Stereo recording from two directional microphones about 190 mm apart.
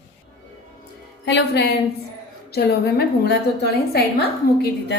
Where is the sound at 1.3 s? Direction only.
60° left (ahead or behind).